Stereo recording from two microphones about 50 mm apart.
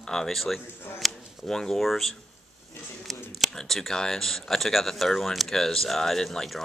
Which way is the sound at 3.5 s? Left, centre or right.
Centre.